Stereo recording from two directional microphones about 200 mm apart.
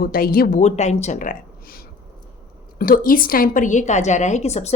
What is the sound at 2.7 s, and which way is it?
A woman's voice, 45° left (ahead or behind).